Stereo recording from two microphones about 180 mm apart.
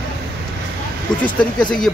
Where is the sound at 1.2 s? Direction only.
5° left (ahead or behind).